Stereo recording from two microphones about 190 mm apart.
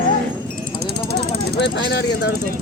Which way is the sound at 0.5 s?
55° right (ahead or behind).